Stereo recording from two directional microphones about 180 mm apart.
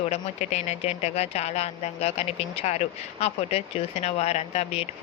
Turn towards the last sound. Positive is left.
turn(degrees=35)  # may be behind; listen again after turning